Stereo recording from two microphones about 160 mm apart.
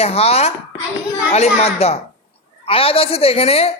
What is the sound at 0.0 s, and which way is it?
A man's voice, 40° left (ahead or behind).